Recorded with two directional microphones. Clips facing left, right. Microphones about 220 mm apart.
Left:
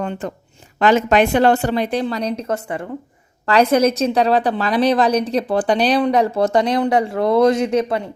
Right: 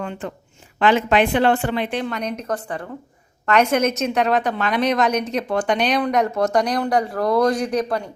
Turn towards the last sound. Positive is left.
turn(degrees=25)  # may be behind; listen again after turning